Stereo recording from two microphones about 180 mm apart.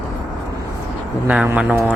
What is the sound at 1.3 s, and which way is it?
Speech, 5° right (ahead or behind).